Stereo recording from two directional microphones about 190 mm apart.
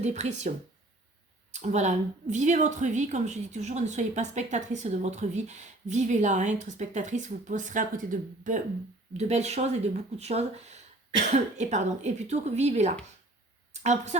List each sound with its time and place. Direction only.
0.0 s a woman's voice: 40° right (ahead or behind)
1.5 s a woman's voice: 35° right (ahead or behind)